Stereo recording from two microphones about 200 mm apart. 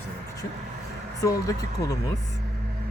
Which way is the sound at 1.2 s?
15° left (ahead or behind).